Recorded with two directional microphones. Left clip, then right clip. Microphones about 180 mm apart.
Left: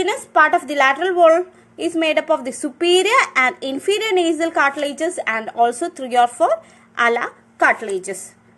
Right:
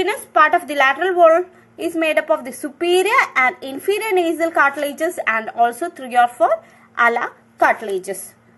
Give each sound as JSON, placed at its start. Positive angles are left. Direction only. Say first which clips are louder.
{"t": 0.0, "sound": "a woman's voice", "louder": "even", "side_deg": 10}